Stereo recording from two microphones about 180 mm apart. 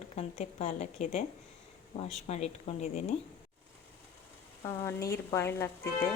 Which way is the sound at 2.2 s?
35° left (ahead or behind).